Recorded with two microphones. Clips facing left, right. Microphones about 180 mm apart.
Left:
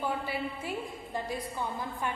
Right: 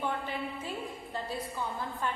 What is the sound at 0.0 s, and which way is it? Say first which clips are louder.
A woman's voice: left 1 dB; 10° left (ahead or behind).